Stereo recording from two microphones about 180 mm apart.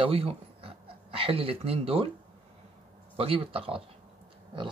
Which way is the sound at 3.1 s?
30° right (ahead or behind).